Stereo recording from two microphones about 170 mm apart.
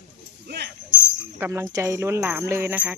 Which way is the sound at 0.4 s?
85° right.